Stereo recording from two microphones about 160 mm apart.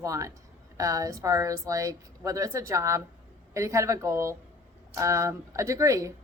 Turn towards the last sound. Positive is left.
turn(degrees=-20)  # may be behind; listen again after turning